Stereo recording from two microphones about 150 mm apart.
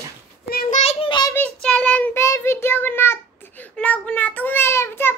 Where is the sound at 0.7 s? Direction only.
45° left (ahead or behind).